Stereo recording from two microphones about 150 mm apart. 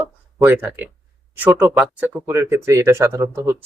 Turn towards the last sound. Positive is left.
turn(degrees=-15)  # may be behind; listen again after turning